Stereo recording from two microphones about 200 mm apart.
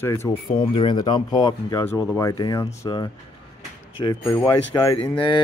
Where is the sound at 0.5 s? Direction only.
25° left (ahead or behind).